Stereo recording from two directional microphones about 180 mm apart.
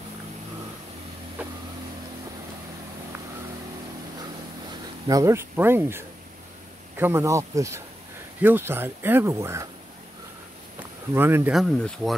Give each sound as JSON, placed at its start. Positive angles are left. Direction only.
{"t": 1.4, "sound": "vehicle", "side_deg": -10}
{"t": 5.0, "sound": "speech", "side_deg": -20}
{"t": 11.1, "sound": "speech", "side_deg": -10}
{"t": 11.5, "sound": "speech", "side_deg": 0}